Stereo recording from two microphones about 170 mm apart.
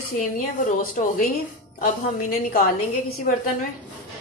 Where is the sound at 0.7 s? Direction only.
55° left (ahead or behind).